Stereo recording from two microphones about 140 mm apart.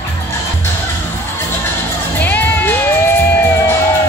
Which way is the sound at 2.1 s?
15° left (ahead or behind).